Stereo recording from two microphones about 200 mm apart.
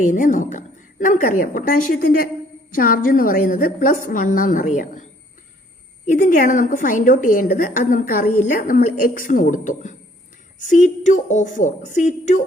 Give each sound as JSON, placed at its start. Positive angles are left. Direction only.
{"t": 0.0, "sound": "a woman's voice", "side_deg": 40}
{"t": 6.1, "sound": "a woman's voice", "side_deg": 45}